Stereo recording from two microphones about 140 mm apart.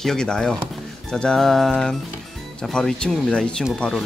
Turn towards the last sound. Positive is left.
turn(degrees=5)  # may be behind; listen again after turning